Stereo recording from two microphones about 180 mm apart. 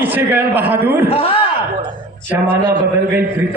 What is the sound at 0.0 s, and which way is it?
Speech, 10° right (ahead or behind).